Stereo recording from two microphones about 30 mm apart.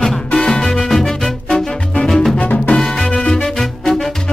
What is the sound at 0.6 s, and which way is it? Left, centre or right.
Music, centre.